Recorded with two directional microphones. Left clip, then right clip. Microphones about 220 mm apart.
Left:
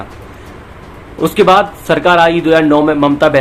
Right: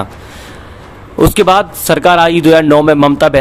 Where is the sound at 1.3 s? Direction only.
50° right (ahead or behind).